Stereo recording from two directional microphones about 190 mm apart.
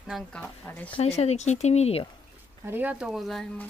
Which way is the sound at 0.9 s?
35° left (ahead or behind).